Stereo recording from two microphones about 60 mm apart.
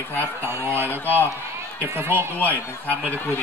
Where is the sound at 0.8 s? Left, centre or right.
Left.